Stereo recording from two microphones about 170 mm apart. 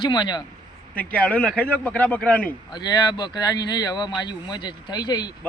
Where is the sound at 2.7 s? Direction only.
25° left (ahead or behind).